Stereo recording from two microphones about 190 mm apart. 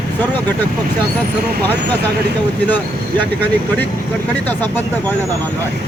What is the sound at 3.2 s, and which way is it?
Speech, 10° left (ahead or behind).